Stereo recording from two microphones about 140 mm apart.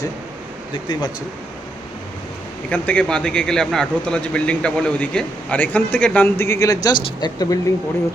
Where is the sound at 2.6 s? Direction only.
10° left (ahead or behind).